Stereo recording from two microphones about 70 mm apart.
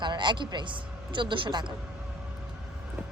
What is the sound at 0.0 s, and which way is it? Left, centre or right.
A woman's voice, right.